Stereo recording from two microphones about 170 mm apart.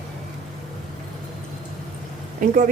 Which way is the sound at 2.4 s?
50° right (ahead or behind).